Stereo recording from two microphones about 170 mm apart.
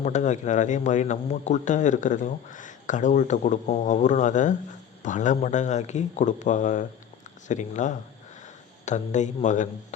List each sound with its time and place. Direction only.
0.0 s speech: 45° left (ahead or behind)